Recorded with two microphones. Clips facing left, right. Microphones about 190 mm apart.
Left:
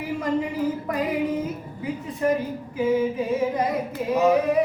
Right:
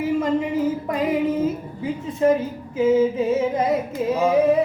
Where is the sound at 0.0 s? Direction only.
20° right (ahead or behind).